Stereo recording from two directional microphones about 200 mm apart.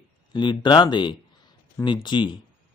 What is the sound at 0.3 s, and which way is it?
Speech, 25° left (ahead or behind).